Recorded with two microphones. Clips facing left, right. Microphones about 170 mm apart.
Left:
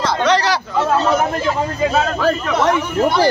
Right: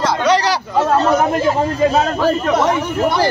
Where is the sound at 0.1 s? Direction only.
10° right (ahead or behind).